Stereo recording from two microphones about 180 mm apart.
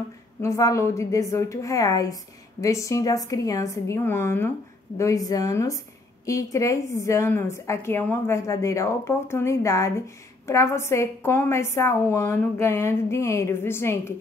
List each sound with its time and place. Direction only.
0.4 s a woman's voice: 15° left (ahead or behind)